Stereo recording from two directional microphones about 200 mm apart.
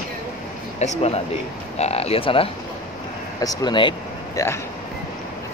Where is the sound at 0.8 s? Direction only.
30° left (ahead or behind).